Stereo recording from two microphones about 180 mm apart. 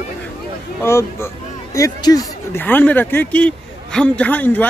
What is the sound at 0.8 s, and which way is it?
A man's voice, 15° left (ahead or behind).